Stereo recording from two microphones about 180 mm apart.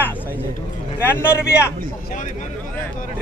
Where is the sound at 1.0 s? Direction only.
10° left (ahead or behind).